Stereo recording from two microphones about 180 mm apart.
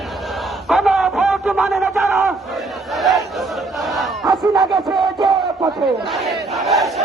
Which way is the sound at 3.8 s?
Centre (ahead or behind).